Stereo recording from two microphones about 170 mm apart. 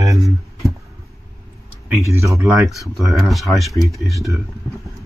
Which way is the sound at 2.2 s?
15° right (ahead or behind).